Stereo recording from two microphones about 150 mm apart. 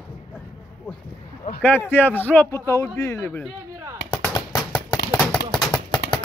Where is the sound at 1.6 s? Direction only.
15° left (ahead or behind).